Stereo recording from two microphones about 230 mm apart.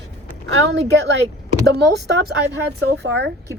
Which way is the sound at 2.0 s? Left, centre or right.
Right.